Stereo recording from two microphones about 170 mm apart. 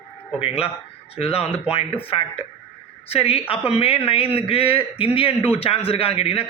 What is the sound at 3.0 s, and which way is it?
A man's voice, 35° left (ahead or behind).